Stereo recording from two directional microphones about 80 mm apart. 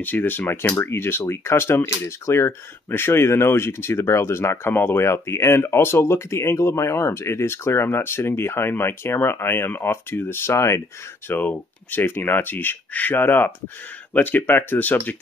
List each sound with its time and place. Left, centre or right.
0.0 s speech: left
11.2 s speech: left